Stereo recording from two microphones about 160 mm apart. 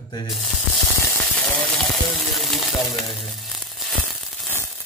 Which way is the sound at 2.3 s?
Centre (ahead or behind).